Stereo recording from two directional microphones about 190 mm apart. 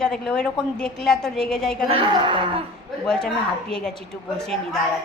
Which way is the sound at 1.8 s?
30° right (ahead or behind).